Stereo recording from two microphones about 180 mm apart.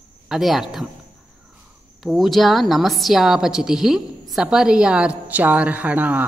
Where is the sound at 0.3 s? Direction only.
Centre (ahead or behind).